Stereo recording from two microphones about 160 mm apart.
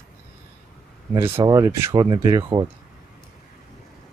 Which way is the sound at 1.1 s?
15° right (ahead or behind).